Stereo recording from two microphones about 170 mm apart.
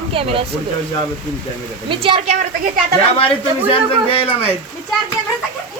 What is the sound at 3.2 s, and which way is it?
Speech, 30° left (ahead or behind).